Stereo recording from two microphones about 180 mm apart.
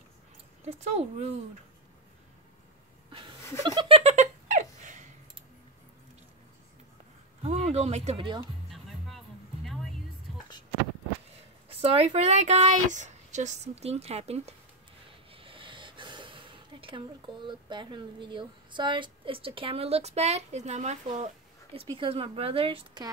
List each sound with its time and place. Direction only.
0.7 s a woman's voice: 35° right (ahead or behind)
3.1 s a sound: 30° right (ahead or behind)
3.6 s giggle: 25° right (ahead or behind)
4.0 s a sound: 40° right (ahead or behind)
7.4 s speech: 35° right (ahead or behind)
8.7 s music: centre (ahead or behind)
11.7 s a woman's voice: 35° right (ahead or behind)